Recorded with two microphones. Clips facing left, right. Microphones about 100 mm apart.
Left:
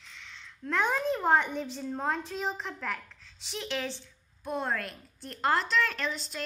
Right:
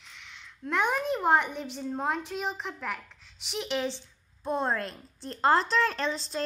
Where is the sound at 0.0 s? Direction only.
10° right (ahead or behind).